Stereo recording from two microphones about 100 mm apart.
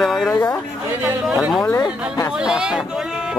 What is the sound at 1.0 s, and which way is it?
Speech, 5° right (ahead or behind).